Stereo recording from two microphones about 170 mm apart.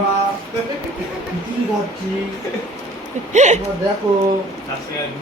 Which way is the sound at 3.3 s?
45° right (ahead or behind).